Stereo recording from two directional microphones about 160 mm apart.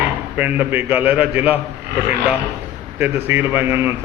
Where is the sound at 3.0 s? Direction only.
15° right (ahead or behind).